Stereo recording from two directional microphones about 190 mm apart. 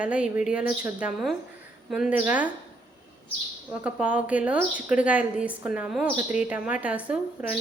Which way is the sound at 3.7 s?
5° right (ahead or behind).